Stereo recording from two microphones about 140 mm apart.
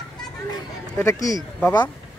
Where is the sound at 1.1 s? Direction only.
25° left (ahead or behind).